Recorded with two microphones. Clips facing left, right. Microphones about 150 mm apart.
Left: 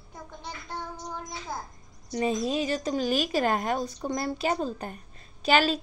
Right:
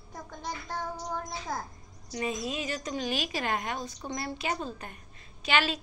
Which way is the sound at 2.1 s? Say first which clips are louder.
Left 6 dB; 35° left (ahead or behind).